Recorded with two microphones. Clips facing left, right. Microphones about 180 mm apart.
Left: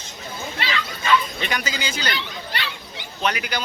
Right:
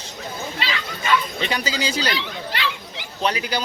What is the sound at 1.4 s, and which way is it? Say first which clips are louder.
Speech: right 3 dB; 30° right (ahead or behind).